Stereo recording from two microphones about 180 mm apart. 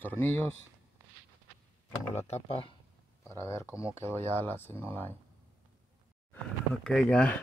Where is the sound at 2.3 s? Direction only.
30° left (ahead or behind).